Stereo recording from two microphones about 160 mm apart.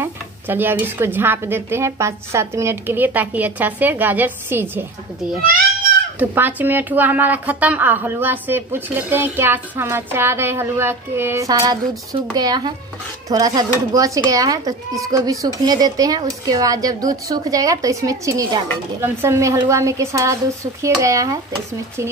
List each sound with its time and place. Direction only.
0.0 s speech: 15° right (ahead or behind)
6.1 s speech: 10° right (ahead or behind)